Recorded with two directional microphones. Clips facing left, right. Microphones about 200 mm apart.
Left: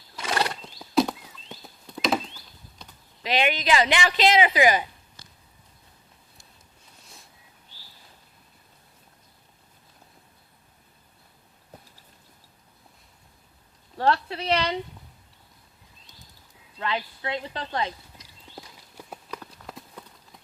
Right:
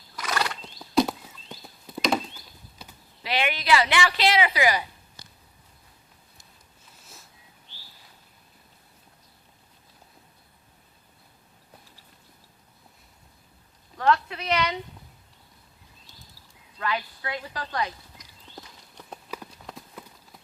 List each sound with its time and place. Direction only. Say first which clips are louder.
0.2 s horse: left 2 dB; 30° left (ahead or behind)
0.6 s a sound: right 2 dB; centre (ahead or behind)
2.8 s clip-clop: right 2 dB; 5° right (ahead or behind)
3.2 s a woman's voice: left 1 dB; 20° left (ahead or behind)
13.9 s speech: even; 30° left (ahead or behind)
16.7 s a woman's voice: even; 25° left (ahead or behind)
18.5 s clip-clop: left 2 dB; 10° left (ahead or behind)